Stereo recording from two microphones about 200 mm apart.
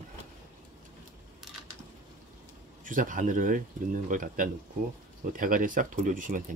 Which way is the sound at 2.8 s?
40° right (ahead or behind).